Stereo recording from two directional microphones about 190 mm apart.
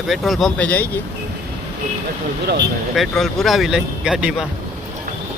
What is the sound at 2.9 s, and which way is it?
Speech, centre (ahead or behind).